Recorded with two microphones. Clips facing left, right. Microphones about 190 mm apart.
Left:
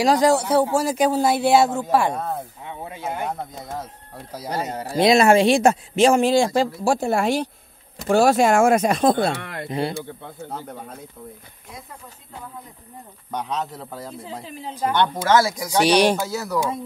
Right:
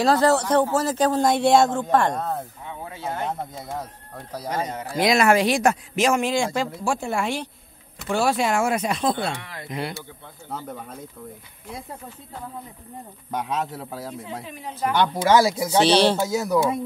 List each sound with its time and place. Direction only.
0.0 s speech: 15° left (ahead or behind)
2.6 s speech: 15° left (ahead or behind)
4.5 s a man's voice: 35° left (ahead or behind)
9.3 s speech: 60° left (ahead or behind)
9.7 s speech: 30° left (ahead or behind)
13.3 s a man's voice: 5° right (ahead or behind)
14.2 s a man's voice: 30° left (ahead or behind)
15.0 s a man's voice: 15° right (ahead or behind)
15.8 s speech: 15° left (ahead or behind)
16.2 s a man's voice: 15° right (ahead or behind)